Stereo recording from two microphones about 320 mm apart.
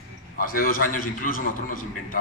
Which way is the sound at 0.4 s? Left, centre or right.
Left.